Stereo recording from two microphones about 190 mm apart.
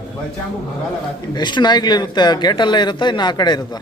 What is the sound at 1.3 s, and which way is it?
Speech, 25° left (ahead or behind).